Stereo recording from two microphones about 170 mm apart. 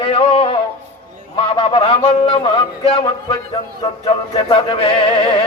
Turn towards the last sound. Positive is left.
turn(degrees=30)  # may be behind; listen again after turning